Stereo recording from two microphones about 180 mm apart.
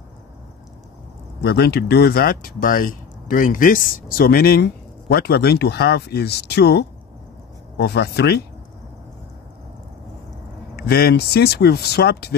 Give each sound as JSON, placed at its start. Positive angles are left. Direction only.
{"t": 1.4, "sound": "speech", "side_deg": 65}
{"t": 10.8, "sound": "speech", "side_deg": 60}